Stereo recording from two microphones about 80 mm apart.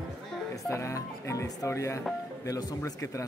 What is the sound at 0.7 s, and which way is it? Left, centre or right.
Speech, left.